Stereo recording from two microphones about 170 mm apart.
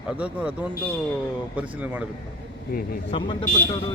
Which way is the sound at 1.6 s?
10° right (ahead or behind).